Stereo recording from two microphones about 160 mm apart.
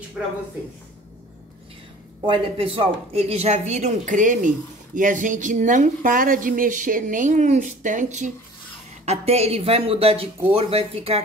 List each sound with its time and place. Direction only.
2.2 s speech: 35° right (ahead or behind)